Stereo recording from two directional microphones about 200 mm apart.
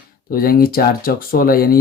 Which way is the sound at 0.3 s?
45° left (ahead or behind).